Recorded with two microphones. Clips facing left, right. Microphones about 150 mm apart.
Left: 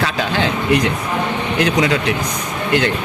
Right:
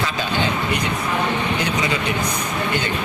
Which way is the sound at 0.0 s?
85° left.